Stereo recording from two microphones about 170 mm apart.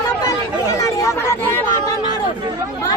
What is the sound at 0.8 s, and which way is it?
Speech, 20° left (ahead or behind).